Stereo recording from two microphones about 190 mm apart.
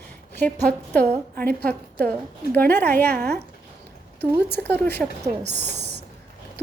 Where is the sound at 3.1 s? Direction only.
55° right (ahead or behind).